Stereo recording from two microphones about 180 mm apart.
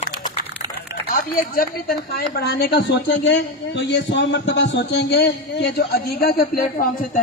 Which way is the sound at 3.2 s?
80° left.